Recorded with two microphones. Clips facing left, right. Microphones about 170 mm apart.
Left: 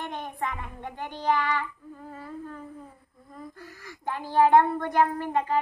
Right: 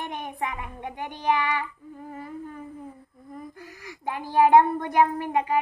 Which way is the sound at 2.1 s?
15° right (ahead or behind).